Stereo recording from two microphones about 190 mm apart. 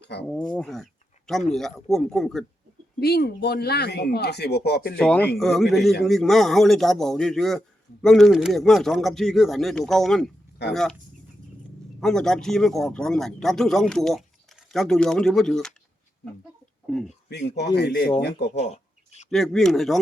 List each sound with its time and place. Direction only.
0.0 s speech: 60° left (ahead or behind)
0.3 s speech: 10° left (ahead or behind)
3.0 s speech: 55° left (ahead or behind)
4.9 s speech: 5° left (ahead or behind)
11.9 s speech: centre (ahead or behind)
17.7 s speech: 60° left (ahead or behind)
18.6 s a sound: 35° left (ahead or behind)
19.3 s speech: centre (ahead or behind)